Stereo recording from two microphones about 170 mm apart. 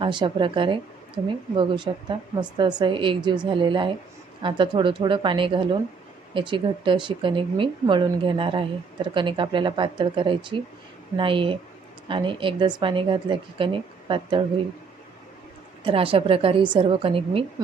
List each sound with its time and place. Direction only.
0.0 s speech: 30° right (ahead or behind)
15.8 s a woman's voice: 30° right (ahead or behind)